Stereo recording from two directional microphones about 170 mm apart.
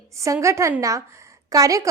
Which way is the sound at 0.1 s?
15° right (ahead or behind).